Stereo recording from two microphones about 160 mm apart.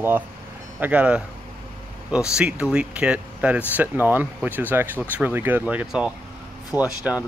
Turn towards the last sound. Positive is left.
turn(degrees=-10)  # may be behind; listen again after turning